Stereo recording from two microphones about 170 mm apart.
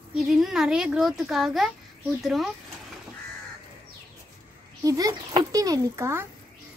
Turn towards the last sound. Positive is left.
turn(degrees=-15)  # may be behind; listen again after turning